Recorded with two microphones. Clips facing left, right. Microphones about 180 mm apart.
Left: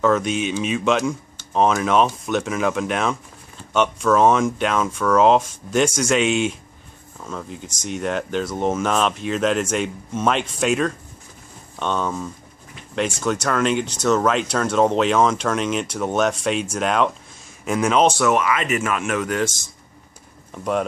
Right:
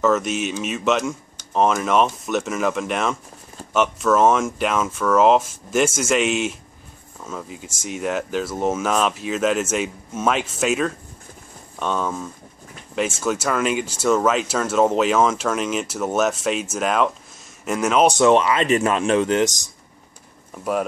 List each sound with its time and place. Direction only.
0.0 s speech: 5° right (ahead or behind)
18.0 s speech: 20° right (ahead or behind)
18.3 s speech: 30° right (ahead or behind)